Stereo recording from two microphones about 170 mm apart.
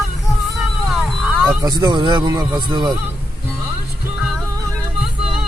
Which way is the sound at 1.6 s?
25° right (ahead or behind).